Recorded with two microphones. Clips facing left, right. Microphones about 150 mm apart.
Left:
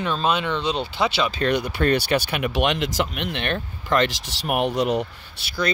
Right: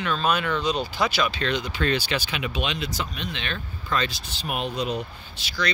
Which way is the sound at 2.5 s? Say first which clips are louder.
Left 9 dB; 75° left (ahead or behind).